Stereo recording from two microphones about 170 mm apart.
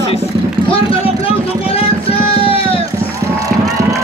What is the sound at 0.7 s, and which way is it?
Music, 35° left (ahead or behind).